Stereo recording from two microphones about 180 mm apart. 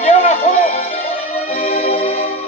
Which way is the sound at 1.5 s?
35° left (ahead or behind).